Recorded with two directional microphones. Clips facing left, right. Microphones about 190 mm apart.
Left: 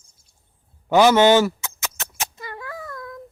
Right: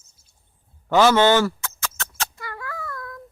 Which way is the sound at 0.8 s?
15° left (ahead or behind).